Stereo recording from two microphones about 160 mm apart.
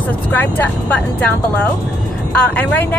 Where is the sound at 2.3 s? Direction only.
10° left (ahead or behind).